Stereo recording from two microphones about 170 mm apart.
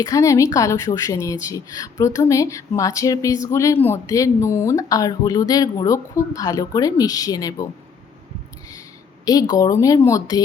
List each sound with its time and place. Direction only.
0.0 s speech: 20° left (ahead or behind)
9.2 s speech: 20° left (ahead or behind)